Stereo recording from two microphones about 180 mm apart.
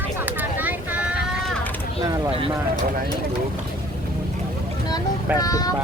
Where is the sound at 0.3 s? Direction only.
10° right (ahead or behind).